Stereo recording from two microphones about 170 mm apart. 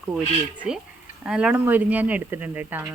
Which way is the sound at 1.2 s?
5° right (ahead or behind).